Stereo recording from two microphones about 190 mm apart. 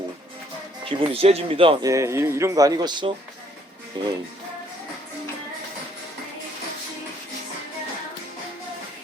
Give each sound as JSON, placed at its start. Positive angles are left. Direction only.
{"t": 0.9, "sound": "speech", "side_deg": -30}
{"t": 1.9, "sound": "speech", "side_deg": -15}